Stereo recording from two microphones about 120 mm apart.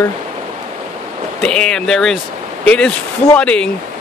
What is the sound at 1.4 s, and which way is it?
Speech, 5° left (ahead or behind).